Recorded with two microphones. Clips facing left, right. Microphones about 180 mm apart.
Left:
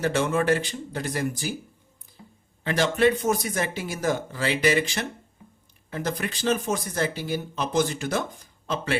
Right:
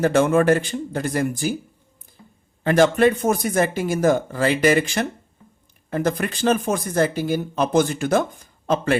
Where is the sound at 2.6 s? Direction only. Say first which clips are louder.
Right 6 dB; 50° right (ahead or behind).